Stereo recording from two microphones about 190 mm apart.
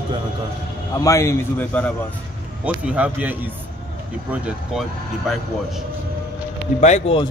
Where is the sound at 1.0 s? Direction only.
15° left (ahead or behind).